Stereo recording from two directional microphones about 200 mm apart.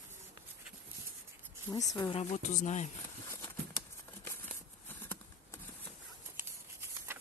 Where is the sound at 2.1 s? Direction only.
35° left (ahead or behind).